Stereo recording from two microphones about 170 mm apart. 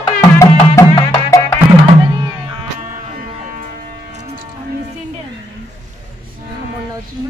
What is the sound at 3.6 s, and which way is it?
Civil defense siren, 45° right (ahead or behind).